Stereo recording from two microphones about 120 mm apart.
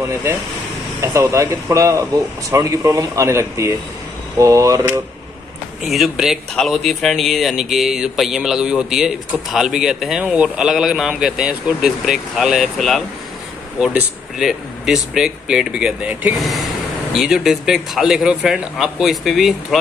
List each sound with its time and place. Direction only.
0.0 s speech: 25° right (ahead or behind)
5.9 s speech: centre (ahead or behind)
16.3 s speech: centre (ahead or behind)